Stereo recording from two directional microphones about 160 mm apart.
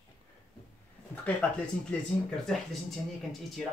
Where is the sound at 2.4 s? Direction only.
Centre (ahead or behind).